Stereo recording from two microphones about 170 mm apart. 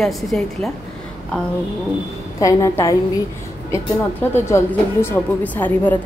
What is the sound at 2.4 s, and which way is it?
A woman's voice, 20° left (ahead or behind).